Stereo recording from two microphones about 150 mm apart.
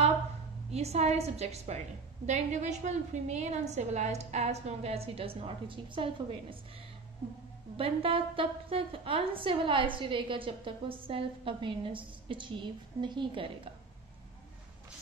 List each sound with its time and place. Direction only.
0.7 s a woman's voice: 45° right (ahead or behind)
7.7 s a woman's voice: 40° right (ahead or behind)